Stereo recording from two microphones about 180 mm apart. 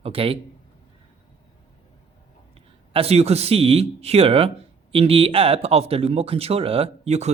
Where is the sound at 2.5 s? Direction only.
30° right (ahead or behind).